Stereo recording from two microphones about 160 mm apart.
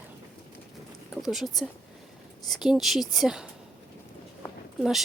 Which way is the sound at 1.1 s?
Centre (ahead or behind).